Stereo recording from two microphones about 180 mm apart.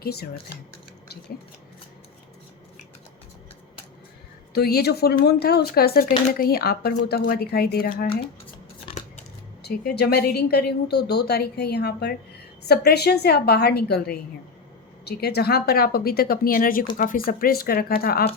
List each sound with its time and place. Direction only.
0.0 s speech: 60° left (ahead or behind)
4.5 s speech: 60° left (ahead or behind)
8.9 s scissors: 40° left (ahead or behind)
9.6 s speech: 65° left (ahead or behind)